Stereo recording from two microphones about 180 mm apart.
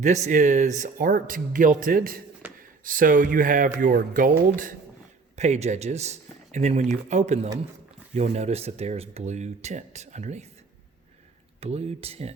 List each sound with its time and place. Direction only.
0.0 s speech: 40° right (ahead or behind)
11.6 s speech: 35° right (ahead or behind)